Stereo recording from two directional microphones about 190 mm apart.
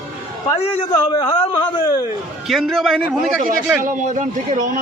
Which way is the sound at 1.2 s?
20° left (ahead or behind).